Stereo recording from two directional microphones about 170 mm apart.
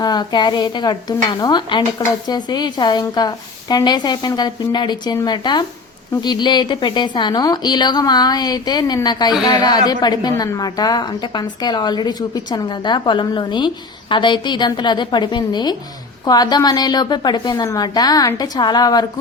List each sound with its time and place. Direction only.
0.0 s stir: 25° left (ahead or behind)